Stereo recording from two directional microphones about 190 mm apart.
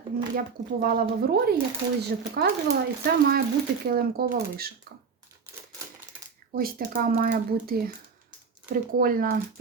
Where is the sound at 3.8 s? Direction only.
50° right (ahead or behind).